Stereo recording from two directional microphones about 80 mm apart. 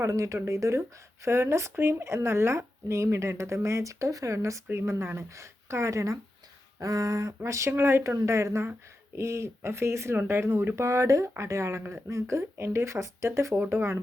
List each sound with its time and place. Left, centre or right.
0.0 s speech: right
6.7 s a sound: right
7.4 s speech: right